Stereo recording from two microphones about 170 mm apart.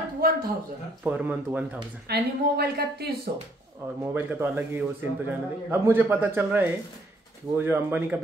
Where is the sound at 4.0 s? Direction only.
15° right (ahead or behind).